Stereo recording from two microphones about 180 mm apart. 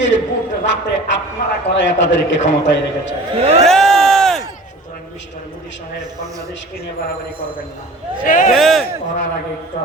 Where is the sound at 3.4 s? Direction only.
35° right (ahead or behind).